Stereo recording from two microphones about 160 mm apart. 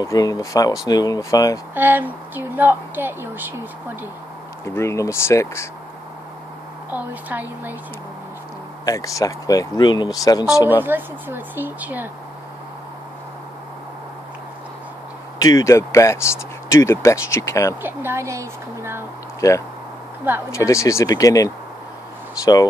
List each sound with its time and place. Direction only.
0.0 s speech: 20° left (ahead or behind)
1.8 s speech: 10° right (ahead or behind)
4.6 s speech: 15° left (ahead or behind)
6.9 s speech: 10° right (ahead or behind)
8.8 s speech: 20° left (ahead or behind)
10.8 s speech: 10° right (ahead or behind)
15.4 s speech: 20° left (ahead or behind)
17.8 s speech: 15° right (ahead or behind)
19.4 s speech: 20° left (ahead or behind)